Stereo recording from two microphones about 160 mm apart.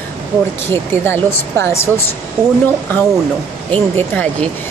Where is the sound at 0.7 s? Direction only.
15° left (ahead or behind).